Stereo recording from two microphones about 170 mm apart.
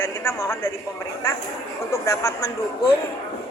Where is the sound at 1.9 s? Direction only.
15° left (ahead or behind).